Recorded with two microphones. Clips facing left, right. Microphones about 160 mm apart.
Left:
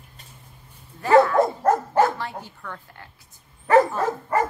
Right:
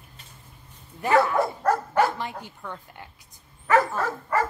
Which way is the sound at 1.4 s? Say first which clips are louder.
Left 4 dB; 20° left (ahead or behind).